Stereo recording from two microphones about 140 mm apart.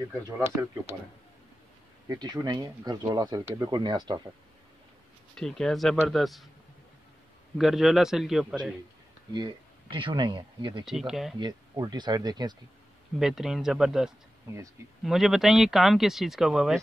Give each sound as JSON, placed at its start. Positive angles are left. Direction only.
{"t": 2.0, "sound": "speech", "side_deg": -30}
{"t": 5.3, "sound": "speech", "side_deg": 5}
{"t": 7.5, "sound": "speech", "side_deg": 0}
{"t": 9.3, "sound": "speech", "side_deg": -35}
{"t": 10.9, "sound": "speech", "side_deg": -5}
{"t": 11.3, "sound": "speech", "side_deg": -30}
{"t": 13.2, "sound": "speech", "side_deg": -5}